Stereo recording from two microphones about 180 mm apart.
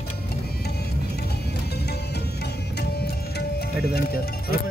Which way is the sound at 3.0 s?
60° left (ahead or behind).